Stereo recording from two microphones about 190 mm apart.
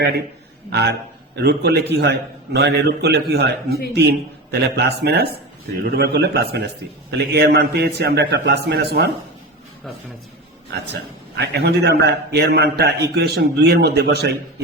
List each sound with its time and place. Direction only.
0.7 s a man's voice: 60° right (ahead or behind)
10.7 s a man's voice: 60° right (ahead or behind)